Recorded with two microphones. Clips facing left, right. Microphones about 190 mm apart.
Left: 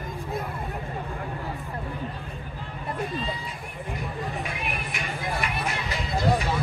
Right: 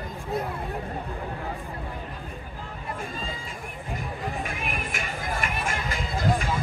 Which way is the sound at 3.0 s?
45° right (ahead or behind).